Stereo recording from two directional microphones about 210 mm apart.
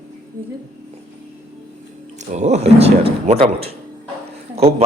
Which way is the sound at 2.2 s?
35° right (ahead or behind).